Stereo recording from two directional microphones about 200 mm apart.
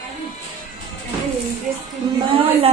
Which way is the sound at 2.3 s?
30° right (ahead or behind).